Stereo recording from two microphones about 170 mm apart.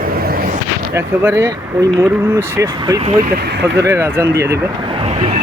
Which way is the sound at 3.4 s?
85° right.